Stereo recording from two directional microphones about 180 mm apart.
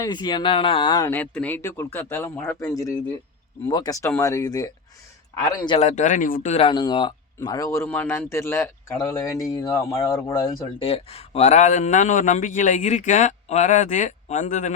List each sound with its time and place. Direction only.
0.0 s speech: 25° left (ahead or behind)
1.1 s a man's voice: 10° left (ahead or behind)
5.7 s a man's voice: 40° left (ahead or behind); by 10.8 s 20° left (ahead or behind)
10.8 s speech: 35° left (ahead or behind)